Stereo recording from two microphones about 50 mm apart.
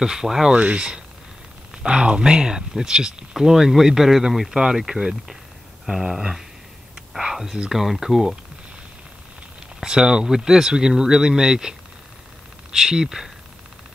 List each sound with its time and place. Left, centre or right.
0.0 s speech: centre
0.6 s speech: right
9.8 s speech: centre
12.7 s speech: centre